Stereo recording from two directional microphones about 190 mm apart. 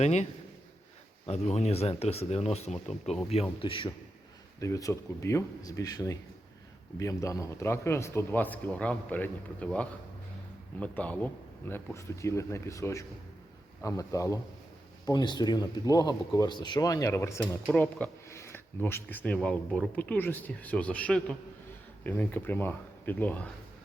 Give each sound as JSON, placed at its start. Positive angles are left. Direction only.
{"t": 0.0, "sound": "speech", "side_deg": 35}
{"t": 1.3, "sound": "speech", "side_deg": 35}